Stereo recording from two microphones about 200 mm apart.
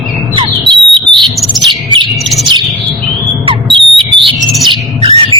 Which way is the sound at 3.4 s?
25° right (ahead or behind).